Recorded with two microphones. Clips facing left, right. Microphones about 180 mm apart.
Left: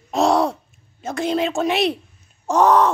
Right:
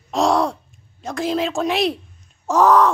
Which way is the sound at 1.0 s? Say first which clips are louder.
Left 1 dB; centre (ahead or behind).